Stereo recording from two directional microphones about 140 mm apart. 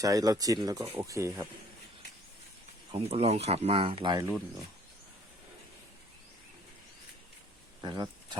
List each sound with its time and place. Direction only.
0.0 s speech: 25° right (ahead or behind)
2.9 s speech: 45° right (ahead or behind)
7.8 s a sound: 30° right (ahead or behind)